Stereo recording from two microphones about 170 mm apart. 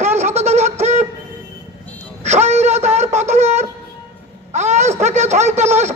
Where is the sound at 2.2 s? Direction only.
40° right (ahead or behind).